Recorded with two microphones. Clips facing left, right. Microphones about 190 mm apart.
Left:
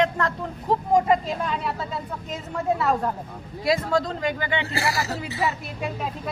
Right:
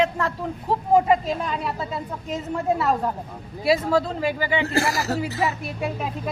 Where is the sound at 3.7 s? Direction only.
5° right (ahead or behind).